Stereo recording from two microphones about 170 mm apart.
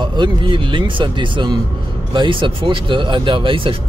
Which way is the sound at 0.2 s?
30° right (ahead or behind).